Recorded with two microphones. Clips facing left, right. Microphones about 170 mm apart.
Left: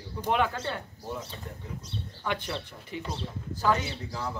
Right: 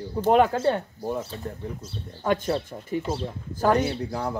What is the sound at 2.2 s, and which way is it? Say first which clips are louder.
Speech: right 9 dB; 45° right (ahead or behind).